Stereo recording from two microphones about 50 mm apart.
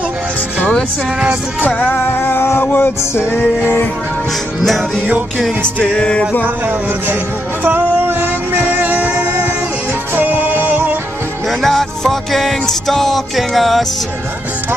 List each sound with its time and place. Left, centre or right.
1.7 s music: left
2.0 s music: left
4.6 s music: centre
5.9 s music: centre
6.4 s speech: right
7.6 s music: right
10.1 s music: right
11.4 s music: centre